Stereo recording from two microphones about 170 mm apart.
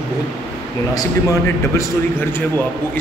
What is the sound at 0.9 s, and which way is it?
Speech, 20° left (ahead or behind).